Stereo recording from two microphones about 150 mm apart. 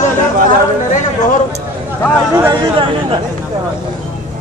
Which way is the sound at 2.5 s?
35° right (ahead or behind).